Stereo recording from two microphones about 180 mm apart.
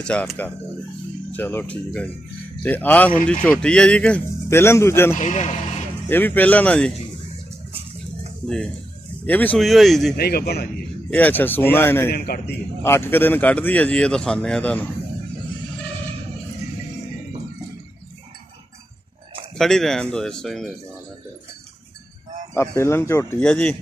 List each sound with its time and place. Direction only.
0.0 s a man's voice: 5° left (ahead or behind)
5.1 s speech: 40° left (ahead or behind)
6.0 s a man's voice: 10° left (ahead or behind)
9.2 s speech: 10° left (ahead or behind)
10.1 s a man's voice: 60° left (ahead or behind)
11.1 s a man's voice: 10° left (ahead or behind)
12.1 s a man's voice: 60° left (ahead or behind)
12.8 s a man's voice: 10° left (ahead or behind)
19.5 s speech: centre (ahead or behind)
22.5 s a man's voice: 15° left (ahead or behind)